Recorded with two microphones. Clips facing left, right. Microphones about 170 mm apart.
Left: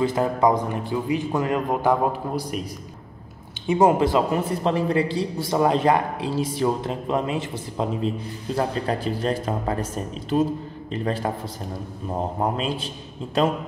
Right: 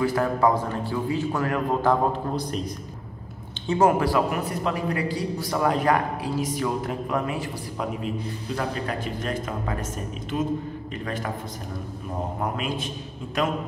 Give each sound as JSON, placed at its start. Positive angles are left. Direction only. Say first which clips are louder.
{"t": 0.0, "sound": "a man's voice", "louder": "left 2 dB", "side_deg": 20}
{"t": 12.4, "sound": "speech", "louder": "left 3 dB", "side_deg": 30}